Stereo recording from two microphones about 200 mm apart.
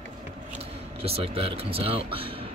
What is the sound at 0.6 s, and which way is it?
Speech, 30° right (ahead or behind).